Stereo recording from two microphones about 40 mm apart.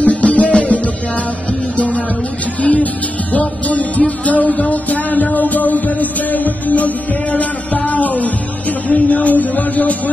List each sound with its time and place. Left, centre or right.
0.0 s music: left
1.8 s a sound: left
2.6 s music: left